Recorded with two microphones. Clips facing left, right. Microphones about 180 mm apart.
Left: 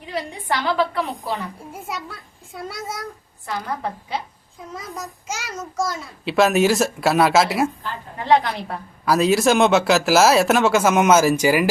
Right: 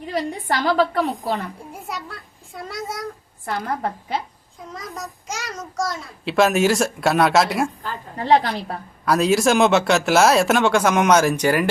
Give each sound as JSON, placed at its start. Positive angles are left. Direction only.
{"t": 0.1, "sound": "a woman's voice", "side_deg": -45}
{"t": 1.9, "sound": "a child's voice", "side_deg": 0}
{"t": 4.7, "sound": "a child's voice", "side_deg": 0}
{"t": 8.2, "sound": "a woman's voice", "side_deg": -35}
{"t": 9.0, "sound": "a child's voice", "side_deg": 0}